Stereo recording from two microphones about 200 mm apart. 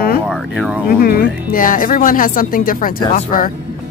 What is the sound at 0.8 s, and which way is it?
Speech, 45° left (ahead or behind).